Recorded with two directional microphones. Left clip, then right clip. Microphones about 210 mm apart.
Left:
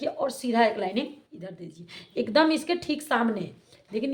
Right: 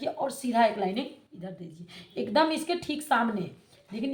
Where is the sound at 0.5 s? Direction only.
50° left (ahead or behind).